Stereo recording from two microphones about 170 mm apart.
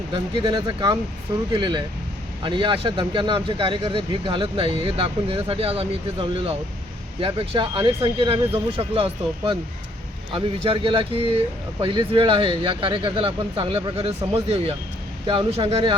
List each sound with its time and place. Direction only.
0.1 s speech: 30° right (ahead or behind)